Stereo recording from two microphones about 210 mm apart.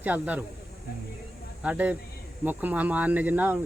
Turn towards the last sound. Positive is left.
turn(degrees=-10)  # may be behind; listen again after turning